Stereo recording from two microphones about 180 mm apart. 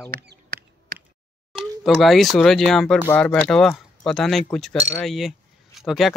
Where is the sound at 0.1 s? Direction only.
60° right (ahead or behind).